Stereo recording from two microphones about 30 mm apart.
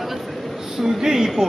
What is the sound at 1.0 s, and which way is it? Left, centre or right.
Speech, centre.